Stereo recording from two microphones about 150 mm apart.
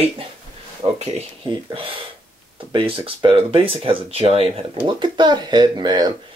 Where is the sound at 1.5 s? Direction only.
35° right (ahead or behind).